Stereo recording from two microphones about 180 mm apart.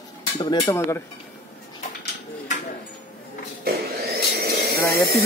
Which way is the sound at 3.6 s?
60° right (ahead or behind).